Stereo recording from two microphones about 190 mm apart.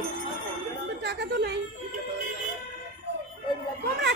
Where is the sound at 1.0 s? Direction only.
60° right (ahead or behind).